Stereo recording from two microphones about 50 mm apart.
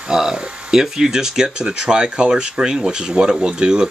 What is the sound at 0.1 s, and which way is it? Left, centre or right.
Speech, centre.